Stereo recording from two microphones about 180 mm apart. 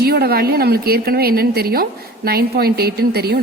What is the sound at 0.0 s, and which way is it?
A woman's voice, 60° right (ahead or behind).